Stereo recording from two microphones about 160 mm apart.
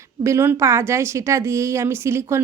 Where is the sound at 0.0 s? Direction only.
15° right (ahead or behind).